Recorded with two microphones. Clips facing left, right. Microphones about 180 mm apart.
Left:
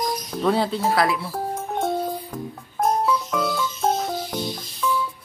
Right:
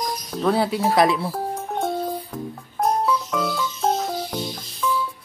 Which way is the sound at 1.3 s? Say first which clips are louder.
Even; centre (ahead or behind).